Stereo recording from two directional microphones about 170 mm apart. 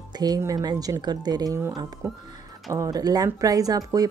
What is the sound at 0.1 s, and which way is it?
Speech, 25° right (ahead or behind).